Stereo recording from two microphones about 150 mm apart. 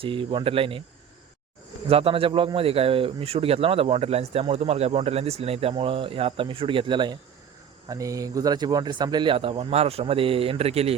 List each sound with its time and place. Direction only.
0.0 s speech: 35° right (ahead or behind)
1.9 s speech: 40° right (ahead or behind)